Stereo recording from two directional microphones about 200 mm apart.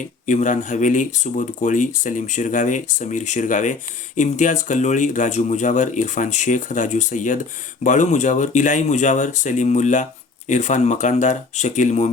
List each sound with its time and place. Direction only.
0.3 s speech: 40° left (ahead or behind)